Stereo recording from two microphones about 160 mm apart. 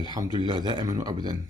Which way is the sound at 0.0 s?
25° right (ahead or behind).